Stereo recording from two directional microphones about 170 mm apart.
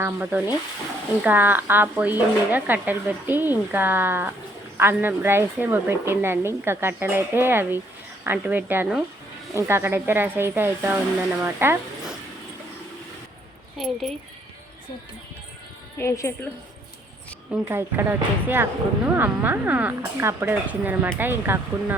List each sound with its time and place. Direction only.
0.0 s speech: 10° right (ahead or behind)
13.7 s a woman's voice: centre (ahead or behind)
16.0 s a woman's voice: 15° left (ahead or behind)
17.5 s speech: 15° right (ahead or behind)